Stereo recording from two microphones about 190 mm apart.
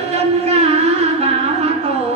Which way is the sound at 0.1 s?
35° right (ahead or behind).